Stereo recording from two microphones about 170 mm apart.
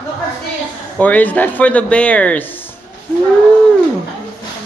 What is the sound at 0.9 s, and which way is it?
A man's voice, 10° left (ahead or behind).